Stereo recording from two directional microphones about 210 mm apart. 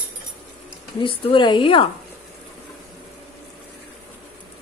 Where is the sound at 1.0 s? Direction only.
25° left (ahead or behind).